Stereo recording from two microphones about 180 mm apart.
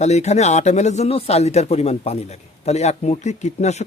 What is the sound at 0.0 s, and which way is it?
Speech, 40° left (ahead or behind).